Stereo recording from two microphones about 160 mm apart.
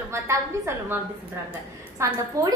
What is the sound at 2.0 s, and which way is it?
Speech, 15° right (ahead or behind).